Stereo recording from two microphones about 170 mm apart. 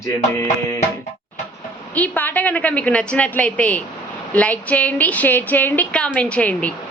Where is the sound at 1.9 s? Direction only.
10° left (ahead or behind).